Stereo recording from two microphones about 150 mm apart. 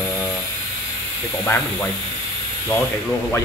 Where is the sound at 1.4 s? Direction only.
10° left (ahead or behind).